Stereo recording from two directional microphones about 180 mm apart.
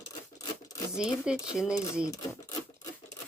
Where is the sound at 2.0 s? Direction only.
20° left (ahead or behind).